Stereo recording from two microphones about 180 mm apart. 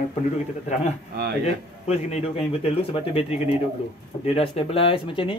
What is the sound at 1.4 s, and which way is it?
Speech, 35° left (ahead or behind).